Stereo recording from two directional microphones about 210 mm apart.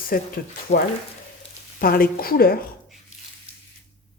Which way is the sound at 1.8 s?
45° left (ahead or behind).